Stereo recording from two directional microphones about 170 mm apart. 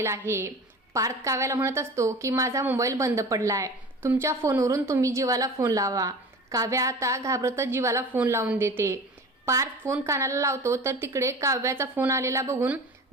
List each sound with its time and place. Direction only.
0.0 s a woman's voice: 15° right (ahead or behind)